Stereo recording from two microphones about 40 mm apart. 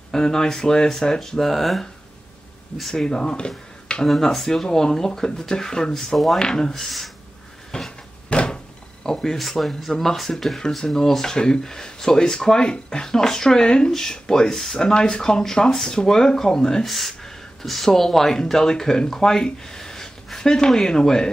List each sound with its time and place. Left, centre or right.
0.1 s speech: centre
3.1 s speech: left
4.0 s speech: centre
6.1 s speech: centre
6.4 s speech: centre
6.7 s speech: centre
7.7 s a sound: left
8.3 s door: left
9.0 s speech: centre
16.8 s speech: centre
18.3 s speech: centre